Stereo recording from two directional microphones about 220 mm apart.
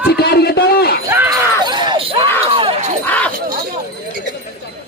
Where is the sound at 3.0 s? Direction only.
5° left (ahead or behind).